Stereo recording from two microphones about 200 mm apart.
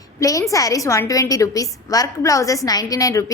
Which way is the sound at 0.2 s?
15° left (ahead or behind).